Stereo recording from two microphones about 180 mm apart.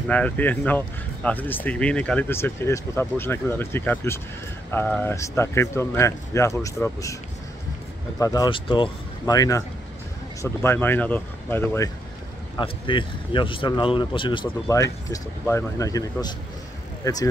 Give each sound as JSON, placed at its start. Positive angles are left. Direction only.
{"t": 0.1, "sound": "speech", "side_deg": 10}
{"t": 8.2, "sound": "speech", "side_deg": 20}
{"t": 12.5, "sound": "speech", "side_deg": 25}